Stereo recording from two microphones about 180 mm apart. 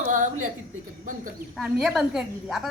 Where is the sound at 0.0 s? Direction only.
45° right (ahead or behind).